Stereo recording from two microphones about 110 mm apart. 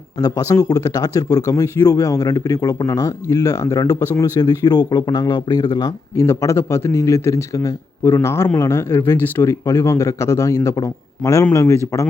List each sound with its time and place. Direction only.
0.2 s speech: 35° left (ahead or behind)
6.2 s a man's voice: 25° left (ahead or behind)